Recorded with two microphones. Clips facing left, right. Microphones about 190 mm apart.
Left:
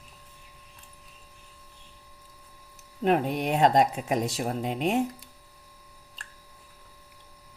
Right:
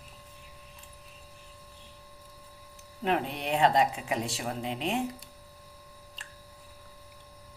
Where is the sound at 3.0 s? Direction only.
45° left (ahead or behind).